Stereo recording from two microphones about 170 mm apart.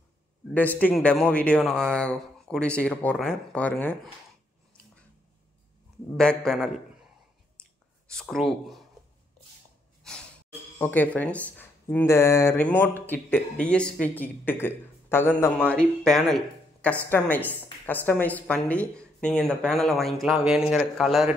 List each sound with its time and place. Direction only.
0.6 s speech: 10° left (ahead or behind)
6.1 s speech: 5° left (ahead or behind)
8.1 s speech: 5° left (ahead or behind)
10.8 s speech: 10° left (ahead or behind)